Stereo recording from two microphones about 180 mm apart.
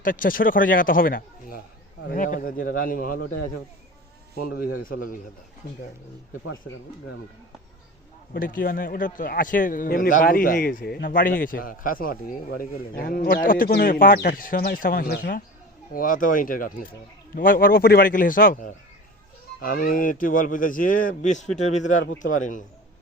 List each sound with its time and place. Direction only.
0.0 s a man's voice: 50° left (ahead or behind)
4.4 s a man's voice: 55° left (ahead or behind)
8.3 s a man's voice: 50° left (ahead or behind)